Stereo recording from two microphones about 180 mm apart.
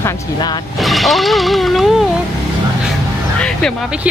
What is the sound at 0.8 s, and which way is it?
Speech, centre (ahead or behind).